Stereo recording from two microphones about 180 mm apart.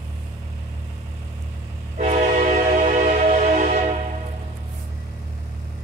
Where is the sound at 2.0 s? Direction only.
40° right (ahead or behind).